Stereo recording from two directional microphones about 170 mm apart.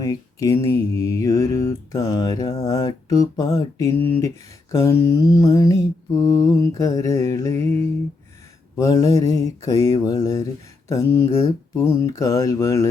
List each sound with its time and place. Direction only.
0.0 s mantra: 20° left (ahead or behind)